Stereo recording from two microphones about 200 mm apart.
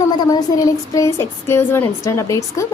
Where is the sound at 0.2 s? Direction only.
20° left (ahead or behind).